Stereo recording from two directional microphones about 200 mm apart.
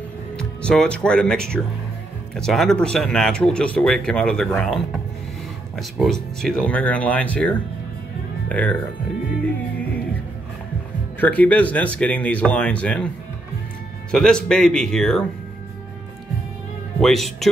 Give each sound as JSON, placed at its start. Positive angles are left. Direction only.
{"t": 0.4, "sound": "speech", "side_deg": 5}
{"t": 11.1, "sound": "speech", "side_deg": 5}
{"t": 14.1, "sound": "speech", "side_deg": 5}
{"t": 17.0, "sound": "speech", "side_deg": 0}